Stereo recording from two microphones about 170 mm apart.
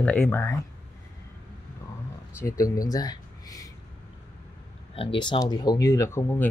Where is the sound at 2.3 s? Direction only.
15° left (ahead or behind).